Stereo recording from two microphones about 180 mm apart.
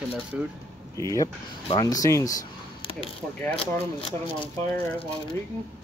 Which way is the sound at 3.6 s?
30° left (ahead or behind).